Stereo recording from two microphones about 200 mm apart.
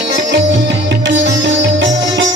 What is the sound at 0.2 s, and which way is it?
Music, 60° right (ahead or behind).